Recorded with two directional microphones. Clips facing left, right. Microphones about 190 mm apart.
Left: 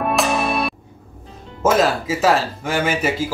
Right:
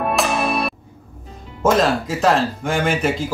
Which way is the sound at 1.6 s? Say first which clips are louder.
Even; 5° left (ahead or behind).